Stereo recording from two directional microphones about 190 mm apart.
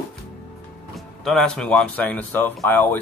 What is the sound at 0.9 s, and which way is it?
Speech, centre (ahead or behind).